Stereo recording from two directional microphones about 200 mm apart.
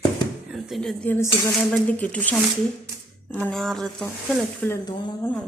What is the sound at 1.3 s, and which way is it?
Speech, 20° left (ahead or behind).